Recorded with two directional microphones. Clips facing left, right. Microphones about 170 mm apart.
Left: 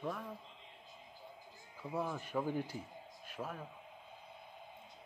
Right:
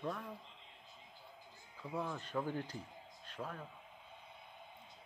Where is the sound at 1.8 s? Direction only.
10° left (ahead or behind).